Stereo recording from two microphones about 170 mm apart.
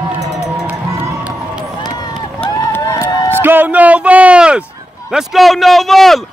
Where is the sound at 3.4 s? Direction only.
10° right (ahead or behind).